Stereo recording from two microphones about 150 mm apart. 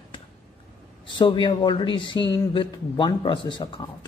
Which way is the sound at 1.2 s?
30° left (ahead or behind).